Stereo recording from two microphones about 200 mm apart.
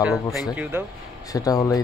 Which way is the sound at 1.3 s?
15° left (ahead or behind).